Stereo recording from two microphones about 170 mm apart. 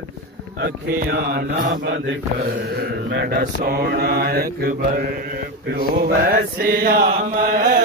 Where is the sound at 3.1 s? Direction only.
75° right (ahead or behind).